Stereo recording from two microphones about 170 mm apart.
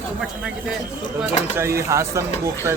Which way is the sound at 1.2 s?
15° right (ahead or behind).